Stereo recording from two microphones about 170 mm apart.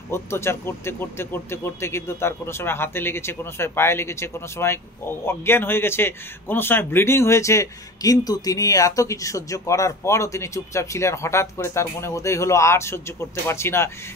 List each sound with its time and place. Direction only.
0.1 s a man's voice: 15° left (ahead or behind)